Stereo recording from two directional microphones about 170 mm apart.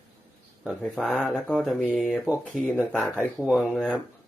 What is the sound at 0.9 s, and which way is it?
Speech, centre (ahead or behind).